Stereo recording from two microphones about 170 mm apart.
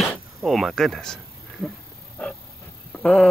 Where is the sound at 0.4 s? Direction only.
Centre (ahead or behind).